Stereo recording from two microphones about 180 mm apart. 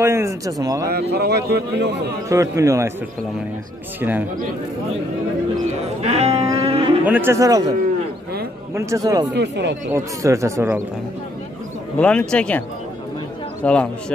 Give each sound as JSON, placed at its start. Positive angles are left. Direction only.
{"t": 0.0, "sound": "speech", "side_deg": -15}
{"t": 1.1, "sound": "a man's voice", "side_deg": -65}
{"t": 2.2, "sound": "speech", "side_deg": -15}
{"t": 4.0, "sound": "speech", "side_deg": -10}
{"t": 6.0, "sound": "music", "side_deg": -35}
{"t": 7.1, "sound": "speech", "side_deg": -15}
{"t": 8.7, "sound": "a man's voice", "side_deg": -20}
{"t": 9.3, "sound": "speech", "side_deg": -70}
{"t": 9.8, "sound": "speech", "side_deg": -15}
{"t": 12.0, "sound": "speech", "side_deg": 5}
{"t": 13.7, "sound": "speech", "side_deg": 5}